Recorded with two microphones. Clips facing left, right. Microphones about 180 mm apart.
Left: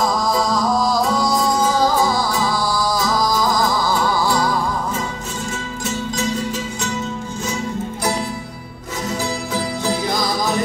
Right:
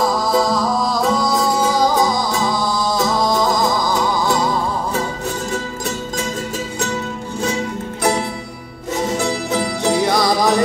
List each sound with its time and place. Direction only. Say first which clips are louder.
0.0 s music: right 2 dB; 5° right (ahead or behind)
1.9 s music: right 1 dB; 15° right (ahead or behind)
9.8 s music: right 7 dB; 75° right (ahead or behind)